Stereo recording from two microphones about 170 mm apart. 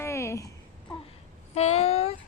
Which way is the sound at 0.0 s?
15° left (ahead or behind).